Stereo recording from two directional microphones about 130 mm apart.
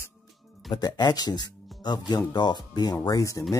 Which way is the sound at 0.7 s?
30° left (ahead or behind).